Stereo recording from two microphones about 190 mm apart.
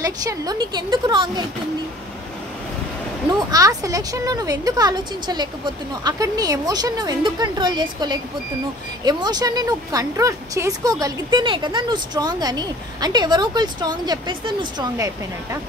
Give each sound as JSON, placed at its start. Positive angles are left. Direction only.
{"t": 0.0, "sound": "speech", "side_deg": -20}
{"t": 3.3, "sound": "speech", "side_deg": -20}